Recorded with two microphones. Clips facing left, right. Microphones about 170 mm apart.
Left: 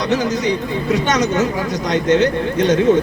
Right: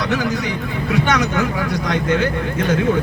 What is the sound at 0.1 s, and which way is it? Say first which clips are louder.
A man's voice: left 3 dB; 20° left (ahead or behind).